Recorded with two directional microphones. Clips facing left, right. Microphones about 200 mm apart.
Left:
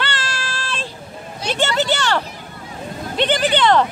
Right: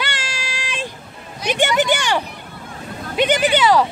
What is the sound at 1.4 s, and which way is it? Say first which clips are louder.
Speech: right 2 dB; 15° right (ahead or behind).